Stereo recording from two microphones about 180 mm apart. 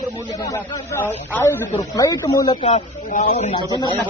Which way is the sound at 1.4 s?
15° left (ahead or behind).